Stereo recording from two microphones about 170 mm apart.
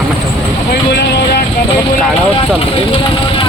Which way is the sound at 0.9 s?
75° left (ahead or behind).